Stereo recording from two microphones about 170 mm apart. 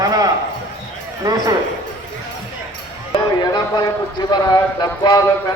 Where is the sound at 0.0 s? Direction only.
20° right (ahead or behind).